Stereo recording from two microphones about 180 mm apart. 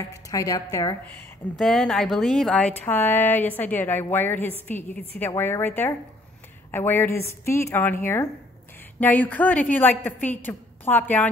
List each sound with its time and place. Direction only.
0.0 s a woman's voice: 15° left (ahead or behind)
1.6 s a woman's voice: 5° left (ahead or behind)